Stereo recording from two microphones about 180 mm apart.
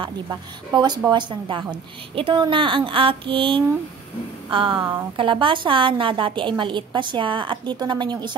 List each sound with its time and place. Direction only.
0.0 s a woman's voice: 25° right (ahead or behind)